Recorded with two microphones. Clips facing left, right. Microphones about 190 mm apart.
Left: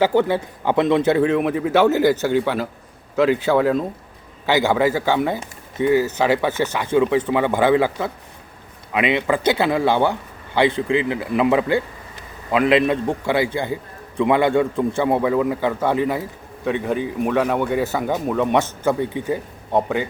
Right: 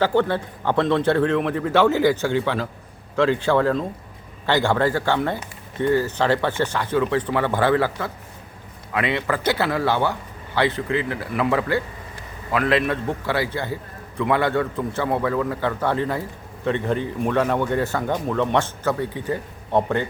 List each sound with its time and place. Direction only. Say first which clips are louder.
0.0 s a man's voice: left 2 dB; 10° left (ahead or behind)